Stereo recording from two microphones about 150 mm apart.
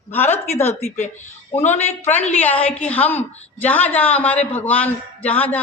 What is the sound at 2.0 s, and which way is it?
A woman's voice, 10° left (ahead or behind).